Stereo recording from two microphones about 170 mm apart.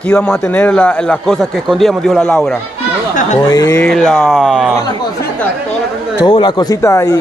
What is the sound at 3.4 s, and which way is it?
Speech, 15° left (ahead or behind).